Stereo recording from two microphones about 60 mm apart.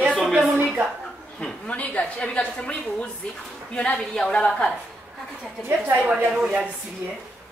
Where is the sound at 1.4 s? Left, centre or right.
Centre.